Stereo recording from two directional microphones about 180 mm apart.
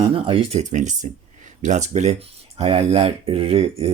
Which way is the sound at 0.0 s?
35° right (ahead or behind).